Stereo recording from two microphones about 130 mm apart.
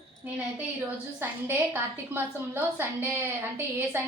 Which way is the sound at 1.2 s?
15° right (ahead or behind).